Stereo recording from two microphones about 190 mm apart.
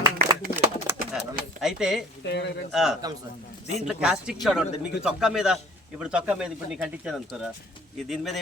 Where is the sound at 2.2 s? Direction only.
65° left (ahead or behind).